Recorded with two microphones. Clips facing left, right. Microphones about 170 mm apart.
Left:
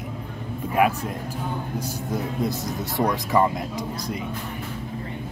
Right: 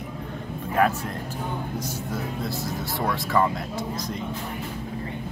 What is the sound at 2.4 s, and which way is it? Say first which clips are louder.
Speech: left 3 dB; 20° left (ahead or behind).